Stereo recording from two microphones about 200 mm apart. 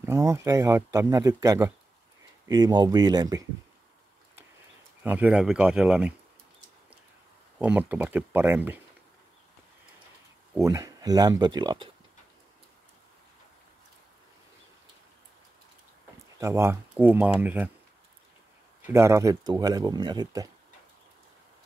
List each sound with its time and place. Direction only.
0.0 s speech: 15° right (ahead or behind)
5.0 s speech: 10° right (ahead or behind)
7.5 s speech: 5° right (ahead or behind)
10.5 s speech: 15° right (ahead or behind)
16.3 s speech: 15° right (ahead or behind)
18.9 s speech: 15° right (ahead or behind)